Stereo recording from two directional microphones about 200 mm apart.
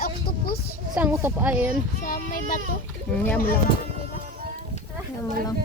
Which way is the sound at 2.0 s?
45° left (ahead or behind).